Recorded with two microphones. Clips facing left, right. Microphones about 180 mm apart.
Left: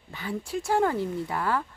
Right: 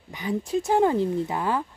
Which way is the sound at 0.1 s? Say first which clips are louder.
Right 6 dB; 15° right (ahead or behind).